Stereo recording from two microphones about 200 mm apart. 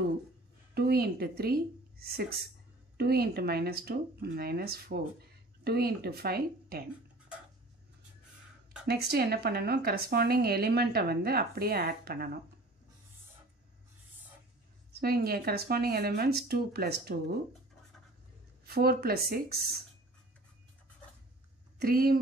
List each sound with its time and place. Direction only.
0.7 s speech: 50° right (ahead or behind)
8.8 s speech: 50° right (ahead or behind)
14.9 s speech: 50° right (ahead or behind)
18.7 s speech: 50° right (ahead or behind)
21.7 s speech: 50° right (ahead or behind)